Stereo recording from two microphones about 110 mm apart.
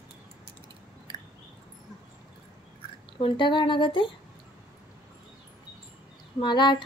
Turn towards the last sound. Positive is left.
turn(degrees=45)  # may be behind; listen again after turning